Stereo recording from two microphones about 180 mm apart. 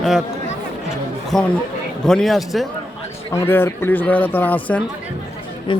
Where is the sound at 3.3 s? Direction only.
10° left (ahead or behind).